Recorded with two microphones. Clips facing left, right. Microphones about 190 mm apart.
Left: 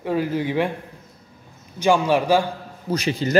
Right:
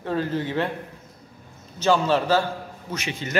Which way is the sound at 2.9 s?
35° left (ahead or behind).